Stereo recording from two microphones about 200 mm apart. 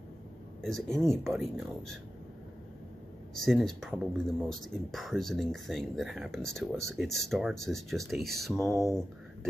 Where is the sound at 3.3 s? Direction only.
Centre (ahead or behind).